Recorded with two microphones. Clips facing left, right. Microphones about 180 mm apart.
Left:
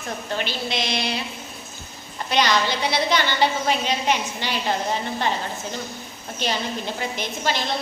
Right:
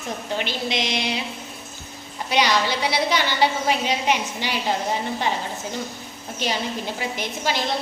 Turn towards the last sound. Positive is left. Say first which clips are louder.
# even
turn(degrees=-10)  # may be behind; listen again after turning